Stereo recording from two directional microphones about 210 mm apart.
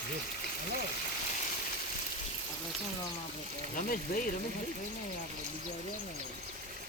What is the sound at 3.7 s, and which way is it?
Speech, 40° left (ahead or behind).